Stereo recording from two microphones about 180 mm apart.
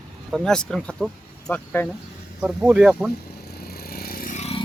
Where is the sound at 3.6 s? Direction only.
60° left (ahead or behind).